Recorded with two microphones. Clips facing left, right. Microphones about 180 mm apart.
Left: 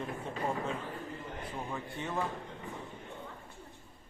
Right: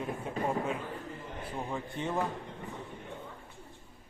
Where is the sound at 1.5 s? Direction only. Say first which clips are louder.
Right 4 dB; 15° right (ahead or behind).